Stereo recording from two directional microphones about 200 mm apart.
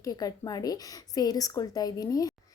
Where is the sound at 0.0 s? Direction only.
20° left (ahead or behind).